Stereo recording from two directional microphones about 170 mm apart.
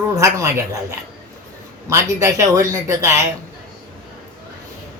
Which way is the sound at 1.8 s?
20° right (ahead or behind).